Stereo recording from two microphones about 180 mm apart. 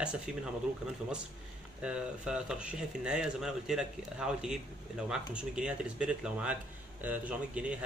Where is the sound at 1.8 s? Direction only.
5° right (ahead or behind).